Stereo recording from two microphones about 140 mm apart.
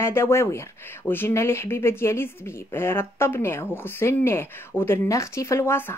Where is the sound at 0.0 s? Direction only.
20° left (ahead or behind).